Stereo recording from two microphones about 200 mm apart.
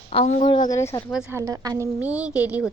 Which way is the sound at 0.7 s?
15° left (ahead or behind).